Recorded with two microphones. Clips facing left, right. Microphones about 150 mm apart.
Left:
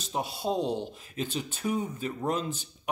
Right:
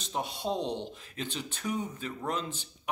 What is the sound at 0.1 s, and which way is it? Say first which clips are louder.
Speech: left 3 dB; 10° left (ahead or behind).